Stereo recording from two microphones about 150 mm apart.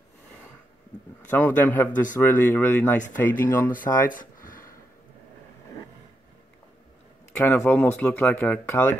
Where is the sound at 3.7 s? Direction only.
65° left (ahead or behind).